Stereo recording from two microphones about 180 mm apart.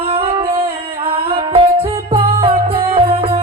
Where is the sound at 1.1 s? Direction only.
30° right (ahead or behind).